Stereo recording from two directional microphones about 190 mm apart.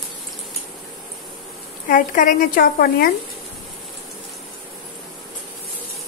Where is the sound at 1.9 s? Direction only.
45° left (ahead or behind).